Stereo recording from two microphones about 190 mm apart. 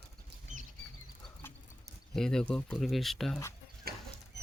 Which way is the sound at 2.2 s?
5° left (ahead or behind).